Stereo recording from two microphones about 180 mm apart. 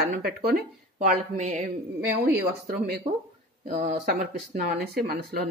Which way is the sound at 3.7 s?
50° right (ahead or behind).